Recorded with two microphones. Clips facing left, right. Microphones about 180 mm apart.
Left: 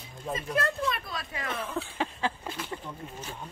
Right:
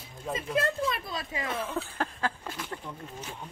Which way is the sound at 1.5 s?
5° right (ahead or behind).